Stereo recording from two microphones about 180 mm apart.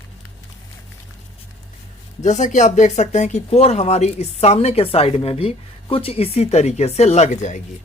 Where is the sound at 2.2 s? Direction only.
40° left (ahead or behind).